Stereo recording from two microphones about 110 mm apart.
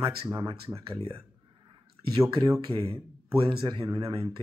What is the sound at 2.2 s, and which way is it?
Speech, 30° right (ahead or behind).